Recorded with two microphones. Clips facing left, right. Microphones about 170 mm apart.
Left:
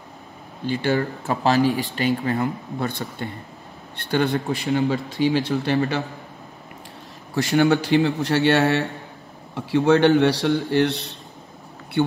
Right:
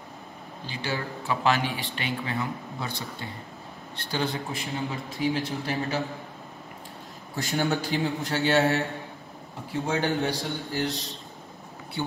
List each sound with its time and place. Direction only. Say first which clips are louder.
0.7 s a man's voice: left 10 dB; 55° left (ahead or behind); by 6.0 s 70° left (ahead or behind)
7.3 s a man's voice: left 9 dB; 70° left (ahead or behind)